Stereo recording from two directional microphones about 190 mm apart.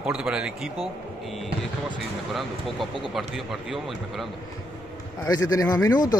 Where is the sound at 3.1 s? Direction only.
Centre (ahead or behind).